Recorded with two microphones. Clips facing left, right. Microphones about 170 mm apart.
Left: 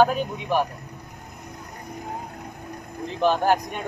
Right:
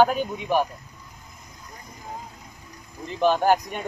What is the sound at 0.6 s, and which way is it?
Vehicle, 65° left (ahead or behind).